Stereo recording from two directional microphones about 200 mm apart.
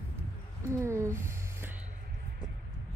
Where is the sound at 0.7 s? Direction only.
15° right (ahead or behind).